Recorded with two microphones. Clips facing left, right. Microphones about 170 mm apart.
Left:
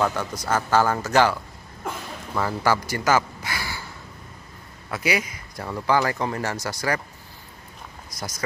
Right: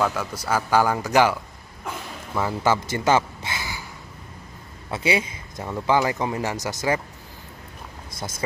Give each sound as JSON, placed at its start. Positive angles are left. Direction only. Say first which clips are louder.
{"t": 0.0, "sound": "a man's voice", "louder": "even", "side_deg": -5}
{"t": 2.4, "sound": "speech", "louder": "right 1 dB", "side_deg": -20}
{"t": 4.9, "sound": "a man's voice", "louder": "right 2 dB", "side_deg": -25}
{"t": 5.7, "sound": "speech", "louder": "right 1 dB", "side_deg": -15}